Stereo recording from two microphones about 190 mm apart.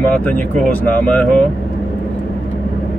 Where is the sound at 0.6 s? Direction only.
5° left (ahead or behind).